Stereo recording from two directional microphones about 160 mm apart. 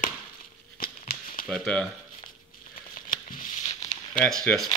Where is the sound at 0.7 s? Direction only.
65° left (ahead or behind).